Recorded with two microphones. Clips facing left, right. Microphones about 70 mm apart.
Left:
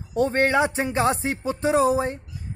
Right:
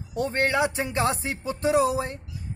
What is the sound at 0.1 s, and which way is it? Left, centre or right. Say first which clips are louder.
Speech: left 4 dB; left.